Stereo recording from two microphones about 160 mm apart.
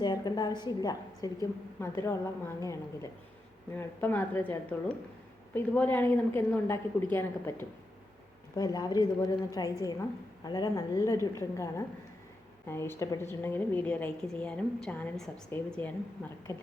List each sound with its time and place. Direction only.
0.0 s a woman's voice: 25° left (ahead or behind)
8.5 s a woman's voice: 25° left (ahead or behind)